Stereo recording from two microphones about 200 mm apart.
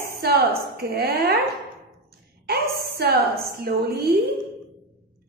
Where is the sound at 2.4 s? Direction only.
50° right (ahead or behind).